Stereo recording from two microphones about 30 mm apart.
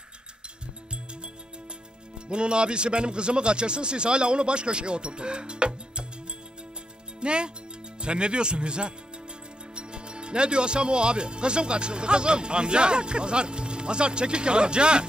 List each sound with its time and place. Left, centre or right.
2.1 s speech: right
7.2 s speech: right